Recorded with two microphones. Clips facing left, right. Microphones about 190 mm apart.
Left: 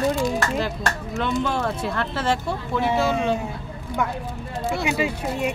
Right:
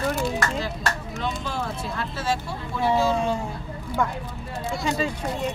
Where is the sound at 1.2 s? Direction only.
65° left (ahead or behind).